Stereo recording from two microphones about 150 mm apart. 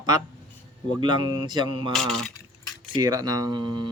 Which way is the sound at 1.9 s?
Centre (ahead or behind).